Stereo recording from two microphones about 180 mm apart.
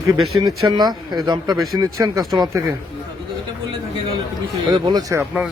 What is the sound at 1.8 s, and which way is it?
Speech, 20° right (ahead or behind).